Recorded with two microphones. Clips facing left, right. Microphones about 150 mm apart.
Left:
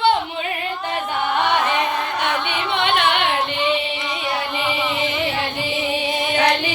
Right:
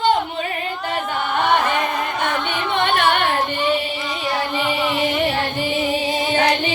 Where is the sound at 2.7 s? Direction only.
50° right (ahead or behind).